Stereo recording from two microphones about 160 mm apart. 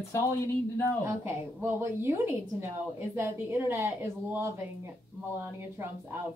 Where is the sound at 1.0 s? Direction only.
15° right (ahead or behind).